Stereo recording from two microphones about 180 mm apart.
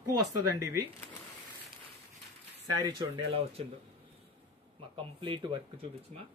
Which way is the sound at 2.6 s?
25° right (ahead or behind).